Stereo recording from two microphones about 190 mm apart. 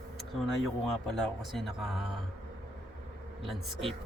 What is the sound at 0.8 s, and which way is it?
Speech, centre (ahead or behind).